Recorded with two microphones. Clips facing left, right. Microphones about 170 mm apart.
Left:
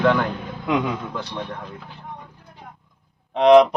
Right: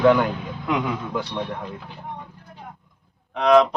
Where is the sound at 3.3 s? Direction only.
25° left (ahead or behind).